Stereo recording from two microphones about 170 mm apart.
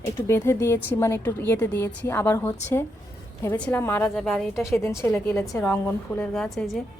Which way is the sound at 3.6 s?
10° left (ahead or behind).